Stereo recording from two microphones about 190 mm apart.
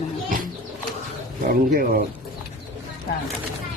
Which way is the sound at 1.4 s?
50° right (ahead or behind).